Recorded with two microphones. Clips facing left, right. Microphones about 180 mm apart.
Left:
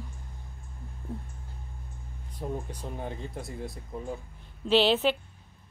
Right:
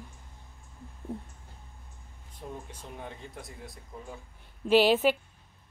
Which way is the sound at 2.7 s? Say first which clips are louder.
Left 6 dB; 35° left (ahead or behind).